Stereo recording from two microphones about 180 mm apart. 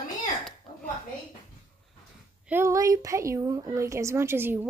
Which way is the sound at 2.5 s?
15° right (ahead or behind).